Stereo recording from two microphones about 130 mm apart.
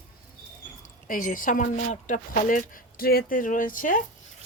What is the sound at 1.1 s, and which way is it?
Speech, 90° left.